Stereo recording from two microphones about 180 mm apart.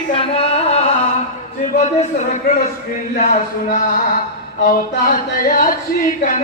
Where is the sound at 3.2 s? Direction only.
50° left (ahead or behind).